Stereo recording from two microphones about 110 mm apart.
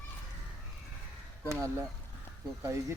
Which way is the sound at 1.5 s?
25° right (ahead or behind).